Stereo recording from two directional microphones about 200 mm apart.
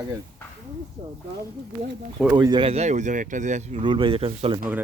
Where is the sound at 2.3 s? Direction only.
20° right (ahead or behind).